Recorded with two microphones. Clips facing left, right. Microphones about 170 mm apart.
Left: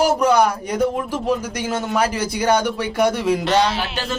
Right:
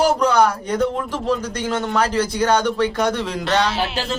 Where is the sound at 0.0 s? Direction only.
10° left (ahead or behind).